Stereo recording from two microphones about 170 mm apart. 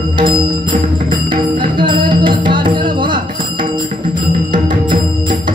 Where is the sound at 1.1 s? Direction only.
30° right (ahead or behind).